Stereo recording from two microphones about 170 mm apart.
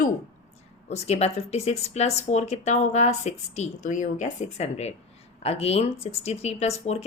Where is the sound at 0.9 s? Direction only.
40° left (ahead or behind).